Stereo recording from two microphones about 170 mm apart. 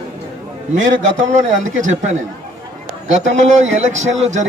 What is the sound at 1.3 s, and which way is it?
Speech, 45° right (ahead or behind).